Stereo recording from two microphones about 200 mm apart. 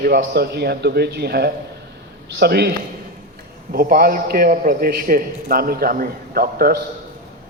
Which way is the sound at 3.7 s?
45° right (ahead or behind).